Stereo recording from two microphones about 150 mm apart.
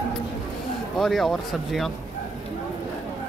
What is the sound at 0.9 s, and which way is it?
Speech, centre (ahead or behind).